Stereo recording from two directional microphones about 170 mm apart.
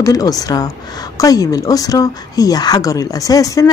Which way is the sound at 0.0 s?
20° left (ahead or behind).